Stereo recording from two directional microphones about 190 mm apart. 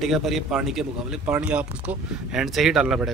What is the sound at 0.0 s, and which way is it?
Speech, centre (ahead or behind).